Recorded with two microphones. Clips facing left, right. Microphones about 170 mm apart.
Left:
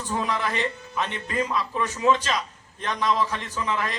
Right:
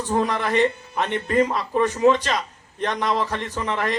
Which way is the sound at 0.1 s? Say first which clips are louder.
Right 5 dB; 55° right (ahead or behind).